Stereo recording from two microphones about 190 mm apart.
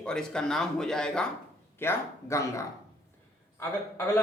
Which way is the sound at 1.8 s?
15° left (ahead or behind).